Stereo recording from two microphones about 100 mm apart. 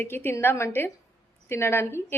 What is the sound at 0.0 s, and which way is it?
A woman's voice, 20° left (ahead or behind).